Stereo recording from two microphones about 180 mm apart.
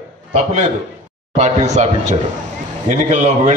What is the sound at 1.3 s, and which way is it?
Speech, 40° right (ahead or behind).